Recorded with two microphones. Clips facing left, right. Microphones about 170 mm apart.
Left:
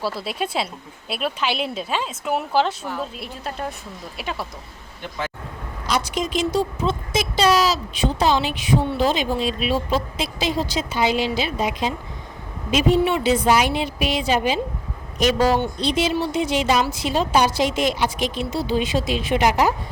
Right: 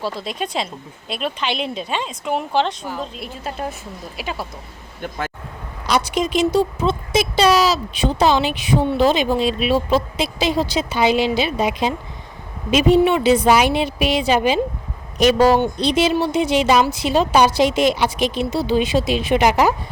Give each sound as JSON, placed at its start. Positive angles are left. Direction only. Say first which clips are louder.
{"t": 0.0, "sound": "speech", "louder": "even", "side_deg": 5}
{"t": 5.9, "sound": "speech", "louder": "right 4 dB", "side_deg": -65}